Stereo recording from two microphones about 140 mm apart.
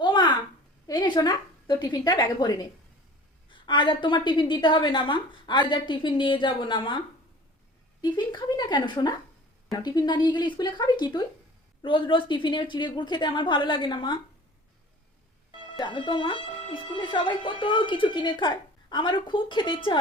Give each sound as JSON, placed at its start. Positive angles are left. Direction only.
{"t": 0.0, "sound": "a sound", "side_deg": 35}
{"t": 0.9, "sound": "a woman's voice", "side_deg": 30}
{"t": 8.0, "sound": "speech", "side_deg": 30}
{"t": 15.8, "sound": "speech", "side_deg": 35}